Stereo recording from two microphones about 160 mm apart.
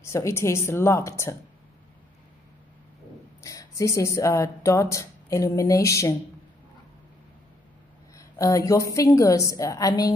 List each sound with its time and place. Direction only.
0.0 s a woman's voice: 15° left (ahead or behind)
3.4 s speech: 20° left (ahead or behind)
8.1 s a woman's voice: 20° left (ahead or behind)